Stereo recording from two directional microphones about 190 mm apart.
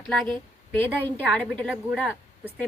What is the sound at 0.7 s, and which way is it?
A woman's voice, 10° left (ahead or behind).